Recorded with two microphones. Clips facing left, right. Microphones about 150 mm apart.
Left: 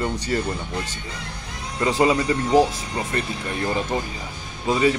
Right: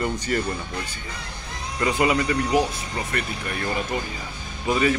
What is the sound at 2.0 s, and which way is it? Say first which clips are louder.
Speech: left 2 dB; 25° left (ahead or behind).